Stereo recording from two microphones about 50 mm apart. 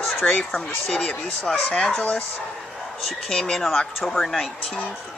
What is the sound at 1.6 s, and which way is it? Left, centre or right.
Speech, left.